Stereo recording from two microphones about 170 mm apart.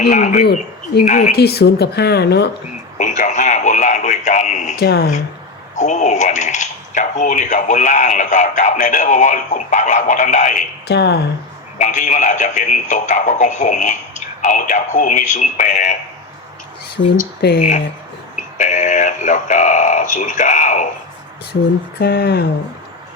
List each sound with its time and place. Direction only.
0.1 s speech: 45° left (ahead or behind)
1.3 s speech: 70° left (ahead or behind)
3.0 s radio: 45° left (ahead or behind)
4.8 s speech: 65° left (ahead or behind)
5.7 s speech: 45° left (ahead or behind)
10.8 s speech: 80° left
11.8 s speech: 45° left (ahead or behind)
17.4 s speech: 75° left (ahead or behind)
18.5 s speech: 45° left (ahead or behind)
21.9 s speech: 65° left (ahead or behind)